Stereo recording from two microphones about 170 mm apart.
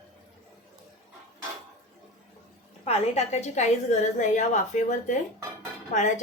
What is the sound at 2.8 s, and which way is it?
A woman's voice, 40° left (ahead or behind).